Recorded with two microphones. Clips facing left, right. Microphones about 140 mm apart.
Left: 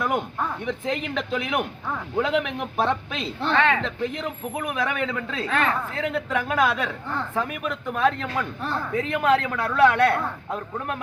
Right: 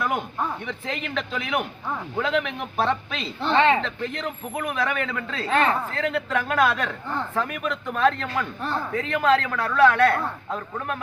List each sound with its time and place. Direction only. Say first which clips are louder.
0.0 s speech: left 1 dB; centre (ahead or behind)
0.9 s a man's voice: left 2 dB; 15° left (ahead or behind)
3.5 s speech: right 3 dB; 25° right (ahead or behind)
3.8 s a man's voice: left 2 dB; 10° left (ahead or behind)
5.5 s speech: right 3 dB; 30° right (ahead or behind)
5.9 s a man's voice: right 1 dB; 10° left (ahead or behind)